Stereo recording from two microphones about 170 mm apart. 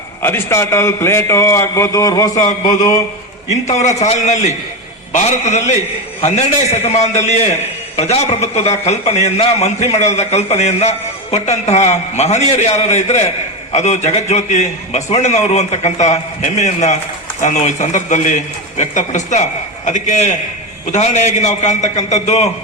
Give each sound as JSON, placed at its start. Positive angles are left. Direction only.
{"t": 0.2, "sound": "a man's voice", "side_deg": 15}
{"t": 2.5, "sound": "a man's voice", "side_deg": 45}